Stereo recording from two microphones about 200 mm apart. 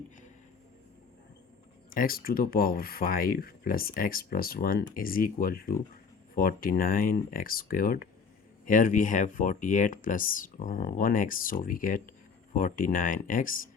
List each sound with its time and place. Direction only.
1.9 s speech: 45° left (ahead or behind)